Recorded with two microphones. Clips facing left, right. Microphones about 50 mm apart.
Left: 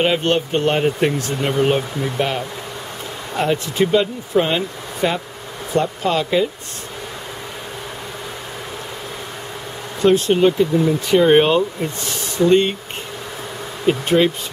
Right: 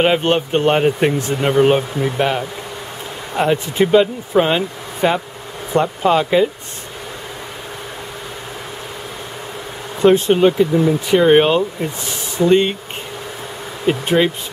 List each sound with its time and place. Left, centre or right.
0.0 s speech: centre
10.0 s speech: centre
10.3 s speech: centre
13.8 s speech: centre